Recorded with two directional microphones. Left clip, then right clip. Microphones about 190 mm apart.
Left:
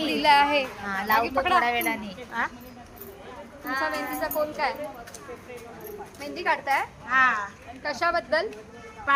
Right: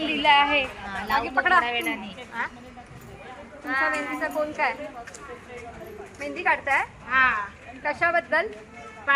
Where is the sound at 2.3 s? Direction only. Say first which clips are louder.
Left 2 dB; 55° left (ahead or behind).